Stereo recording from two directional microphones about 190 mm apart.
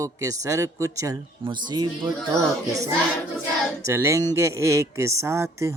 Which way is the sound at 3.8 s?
15° right (ahead or behind).